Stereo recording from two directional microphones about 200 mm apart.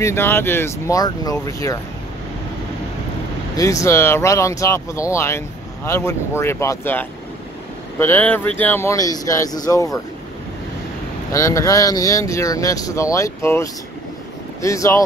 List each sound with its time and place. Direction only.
0.0 s speech: 10° left (ahead or behind)
3.5 s speech: 15° left (ahead or behind)
11.3 s speech: 15° left (ahead or behind)